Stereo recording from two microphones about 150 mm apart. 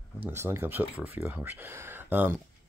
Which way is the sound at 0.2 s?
15° right (ahead or behind).